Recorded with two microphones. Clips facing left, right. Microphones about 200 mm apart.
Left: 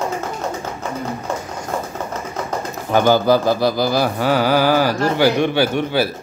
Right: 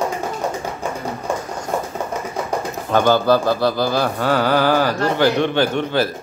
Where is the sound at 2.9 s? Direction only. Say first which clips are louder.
Left 1 dB; 10° left (ahead or behind).